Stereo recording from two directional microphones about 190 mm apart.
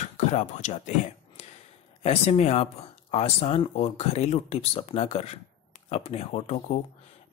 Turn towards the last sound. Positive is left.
turn(degrees=35)  # may be behind; listen again after turning